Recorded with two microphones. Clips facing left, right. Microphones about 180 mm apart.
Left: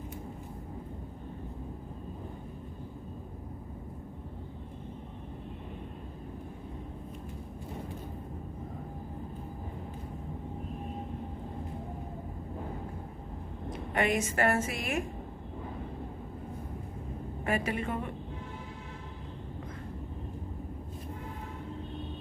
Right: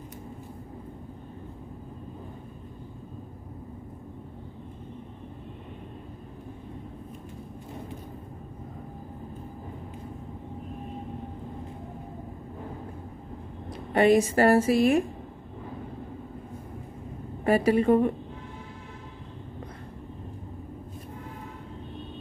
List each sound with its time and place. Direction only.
13.7 s a woman's voice: 35° right (ahead or behind)
17.5 s a woman's voice: 35° right (ahead or behind)